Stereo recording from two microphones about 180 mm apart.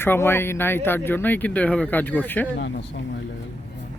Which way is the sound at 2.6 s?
75° left (ahead or behind).